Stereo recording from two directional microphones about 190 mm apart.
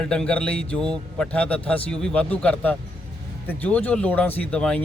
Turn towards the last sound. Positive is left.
turn(degrees=5)  # may be behind; listen again after turning